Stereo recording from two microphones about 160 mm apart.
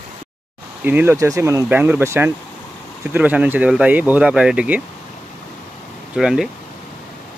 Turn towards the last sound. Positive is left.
turn(degrees=-5)  # may be behind; listen again after turning